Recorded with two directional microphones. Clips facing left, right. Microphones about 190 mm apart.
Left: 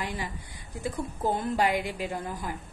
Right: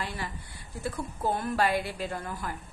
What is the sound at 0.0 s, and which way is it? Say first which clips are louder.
A woman's voice: left 2 dB; 15° left (ahead or behind).